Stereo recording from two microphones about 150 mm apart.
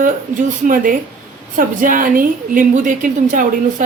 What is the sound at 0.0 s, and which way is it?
A woman's voice, 60° right (ahead or behind).